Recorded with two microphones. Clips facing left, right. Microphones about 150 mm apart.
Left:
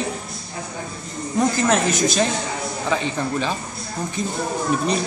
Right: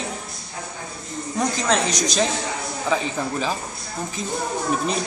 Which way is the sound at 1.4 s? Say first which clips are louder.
Left 3 dB; 5° left (ahead or behind).